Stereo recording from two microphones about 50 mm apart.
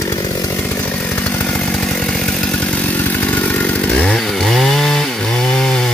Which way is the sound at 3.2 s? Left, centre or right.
Left.